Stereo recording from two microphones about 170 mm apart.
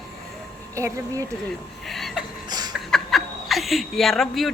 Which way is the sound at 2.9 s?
Centre (ahead or behind).